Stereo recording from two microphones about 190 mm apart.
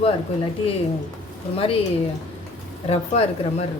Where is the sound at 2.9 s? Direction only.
35° left (ahead or behind).